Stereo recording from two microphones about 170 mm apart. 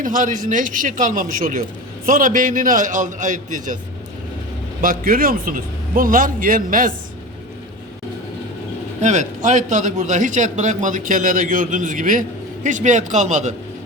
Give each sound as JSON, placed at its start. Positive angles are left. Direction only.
{"t": 0.0, "sound": "a man's voice", "side_deg": -50}
{"t": 4.8, "sound": "a man's voice", "side_deg": -55}
{"t": 9.0, "sound": "a man's voice", "side_deg": -45}